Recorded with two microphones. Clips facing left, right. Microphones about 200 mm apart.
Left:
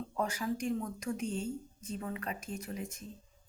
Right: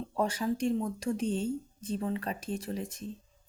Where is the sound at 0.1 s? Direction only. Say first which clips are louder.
Right 5 dB; 30° right (ahead or behind).